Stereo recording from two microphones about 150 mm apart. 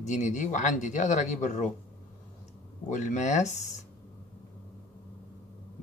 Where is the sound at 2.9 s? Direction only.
55° left (ahead or behind).